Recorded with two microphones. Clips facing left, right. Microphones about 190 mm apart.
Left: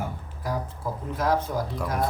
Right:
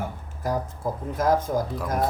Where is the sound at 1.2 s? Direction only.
45° right (ahead or behind).